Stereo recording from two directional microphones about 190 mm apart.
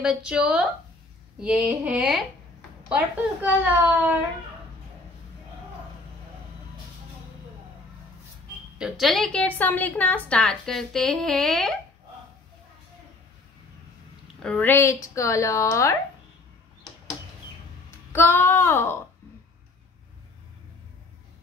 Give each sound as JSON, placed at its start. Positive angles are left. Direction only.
{"t": 0.0, "sound": "a woman's voice", "side_deg": -5}
{"t": 1.4, "sound": "a sound", "side_deg": -5}
{"t": 3.4, "sound": "a sound", "side_deg": -10}
{"t": 8.7, "sound": "a woman's voice", "side_deg": -5}
{"t": 14.2, "sound": "speech", "side_deg": 5}
{"t": 18.1, "sound": "speech", "side_deg": 10}